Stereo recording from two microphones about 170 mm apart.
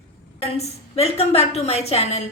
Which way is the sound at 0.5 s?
35° left (ahead or behind).